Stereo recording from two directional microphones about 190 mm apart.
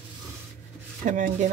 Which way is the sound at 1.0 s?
40° right (ahead or behind).